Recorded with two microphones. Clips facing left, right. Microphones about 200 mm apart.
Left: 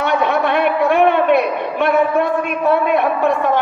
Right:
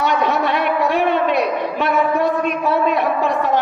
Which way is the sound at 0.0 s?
55° left (ahead or behind).